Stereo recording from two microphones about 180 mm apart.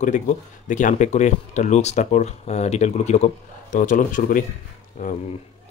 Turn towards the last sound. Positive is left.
turn(degrees=45)  # may be behind; listen again after turning